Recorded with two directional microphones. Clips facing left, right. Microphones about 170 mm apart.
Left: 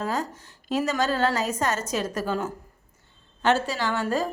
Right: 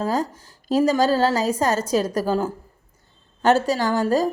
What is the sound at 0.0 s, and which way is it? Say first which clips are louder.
A woman's voice: right 5 dB; 35° right (ahead or behind).